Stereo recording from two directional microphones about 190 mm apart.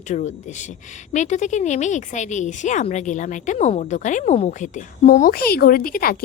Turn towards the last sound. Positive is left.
turn(degrees=50)  # may be behind; listen again after turning